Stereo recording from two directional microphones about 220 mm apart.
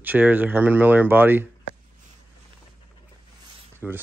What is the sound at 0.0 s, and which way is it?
Speech, 10° right (ahead or behind).